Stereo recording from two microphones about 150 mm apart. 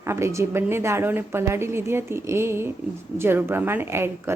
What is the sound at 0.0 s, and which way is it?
A woman's voice, 15° right (ahead or behind).